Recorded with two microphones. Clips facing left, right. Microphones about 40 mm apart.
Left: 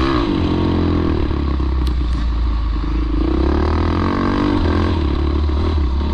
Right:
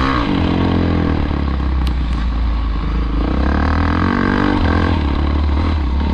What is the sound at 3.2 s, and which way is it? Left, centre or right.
Vehicle, right.